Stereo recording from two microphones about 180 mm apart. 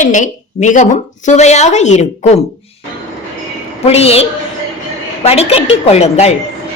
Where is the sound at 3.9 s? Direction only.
35° left (ahead or behind).